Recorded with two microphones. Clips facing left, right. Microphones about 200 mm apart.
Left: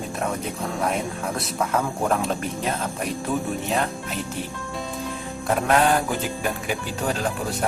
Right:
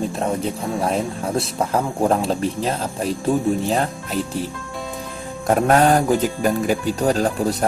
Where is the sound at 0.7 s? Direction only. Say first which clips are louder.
Right 3 dB; 30° right (ahead or behind).